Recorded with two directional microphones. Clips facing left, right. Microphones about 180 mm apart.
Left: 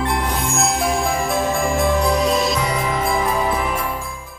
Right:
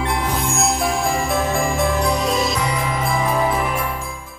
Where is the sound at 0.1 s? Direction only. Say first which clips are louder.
Even; centre (ahead or behind).